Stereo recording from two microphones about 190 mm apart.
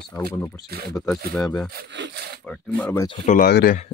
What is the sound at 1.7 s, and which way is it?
Sawing, 60° right (ahead or behind).